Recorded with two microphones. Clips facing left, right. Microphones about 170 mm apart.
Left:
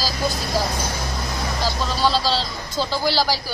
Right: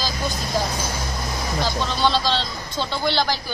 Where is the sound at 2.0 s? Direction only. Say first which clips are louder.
Left 1 dB; 5° left (ahead or behind).